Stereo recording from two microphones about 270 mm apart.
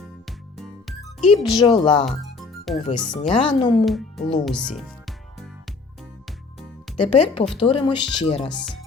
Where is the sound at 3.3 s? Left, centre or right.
Centre.